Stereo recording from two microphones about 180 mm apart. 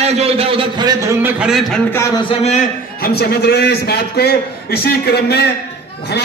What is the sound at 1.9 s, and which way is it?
Speech, 20° left (ahead or behind).